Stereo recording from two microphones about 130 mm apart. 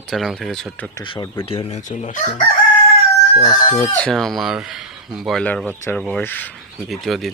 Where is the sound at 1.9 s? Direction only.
70° left (ahead or behind).